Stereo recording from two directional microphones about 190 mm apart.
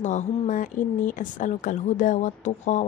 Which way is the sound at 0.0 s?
40° left (ahead or behind).